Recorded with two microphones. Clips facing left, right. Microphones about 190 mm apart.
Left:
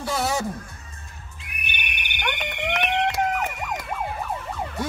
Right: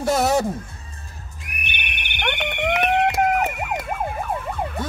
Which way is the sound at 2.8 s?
45° right (ahead or behind).